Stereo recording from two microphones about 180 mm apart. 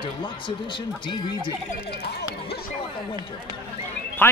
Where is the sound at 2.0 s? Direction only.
70° left (ahead or behind).